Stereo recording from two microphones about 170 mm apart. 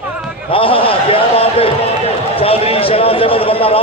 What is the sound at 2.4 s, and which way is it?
A man's voice, 35° left (ahead or behind).